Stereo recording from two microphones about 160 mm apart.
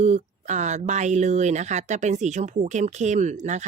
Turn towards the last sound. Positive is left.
turn(degrees=-45)  # may be behind; listen again after turning